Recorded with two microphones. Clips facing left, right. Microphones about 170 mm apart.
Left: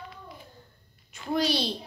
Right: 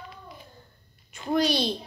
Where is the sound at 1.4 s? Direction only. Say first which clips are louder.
Right 1 dB; 50° right (ahead or behind).